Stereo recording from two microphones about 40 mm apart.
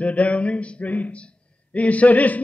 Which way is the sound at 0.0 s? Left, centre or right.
Left.